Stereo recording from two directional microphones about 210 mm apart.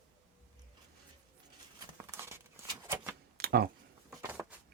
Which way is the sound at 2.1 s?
10° right (ahead or behind).